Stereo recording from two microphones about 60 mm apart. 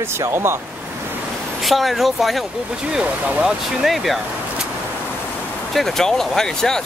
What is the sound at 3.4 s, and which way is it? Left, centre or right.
Speech, centre.